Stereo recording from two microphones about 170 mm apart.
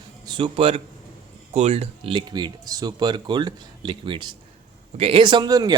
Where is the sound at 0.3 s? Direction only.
30° right (ahead or behind).